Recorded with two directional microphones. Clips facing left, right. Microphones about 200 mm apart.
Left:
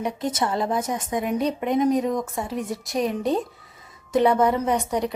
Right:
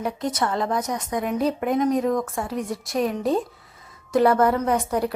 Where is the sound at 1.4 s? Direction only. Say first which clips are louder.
Right 1 dB; centre (ahead or behind).